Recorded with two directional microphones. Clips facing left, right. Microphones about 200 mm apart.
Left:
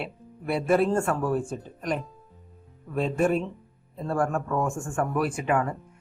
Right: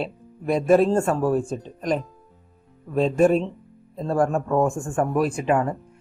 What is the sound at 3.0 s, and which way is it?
Speech, 30° right (ahead or behind).